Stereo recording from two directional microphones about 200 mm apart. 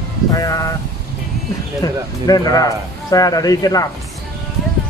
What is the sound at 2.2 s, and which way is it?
A man's voice, 20° left (ahead or behind).